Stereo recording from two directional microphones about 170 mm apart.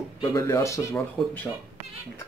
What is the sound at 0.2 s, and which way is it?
Speech, 20° left (ahead or behind).